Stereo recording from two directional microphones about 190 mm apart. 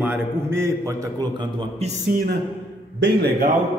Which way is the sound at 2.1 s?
55° right (ahead or behind).